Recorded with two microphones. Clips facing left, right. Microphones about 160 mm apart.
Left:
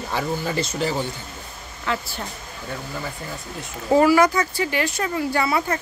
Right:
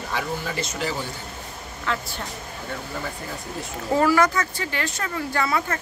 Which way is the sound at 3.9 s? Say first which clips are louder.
Left 4 dB; 10° left (ahead or behind).